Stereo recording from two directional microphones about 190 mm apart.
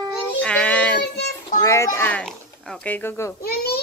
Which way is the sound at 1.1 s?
60° left (ahead or behind).